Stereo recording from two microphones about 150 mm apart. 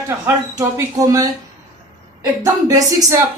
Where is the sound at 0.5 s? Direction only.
25° right (ahead or behind).